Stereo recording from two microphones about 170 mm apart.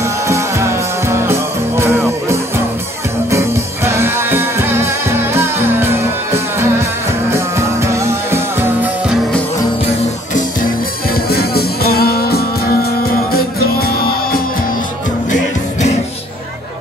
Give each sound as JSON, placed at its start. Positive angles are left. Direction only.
{"t": 0.0, "sound": "music", "side_deg": -15}
{"t": 11.2, "sound": "music", "side_deg": 65}